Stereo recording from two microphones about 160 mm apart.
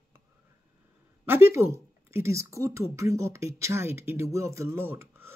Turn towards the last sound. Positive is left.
turn(degrees=-15)  # may be behind; listen again after turning